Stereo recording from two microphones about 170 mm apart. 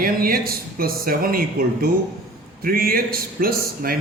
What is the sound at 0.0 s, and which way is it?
A man's voice, 60° right (ahead or behind).